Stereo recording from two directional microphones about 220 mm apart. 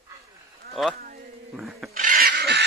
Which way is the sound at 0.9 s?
40° right (ahead or behind).